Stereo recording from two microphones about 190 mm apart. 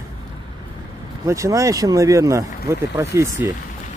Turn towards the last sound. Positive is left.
turn(degrees=-15)  # may be behind; listen again after turning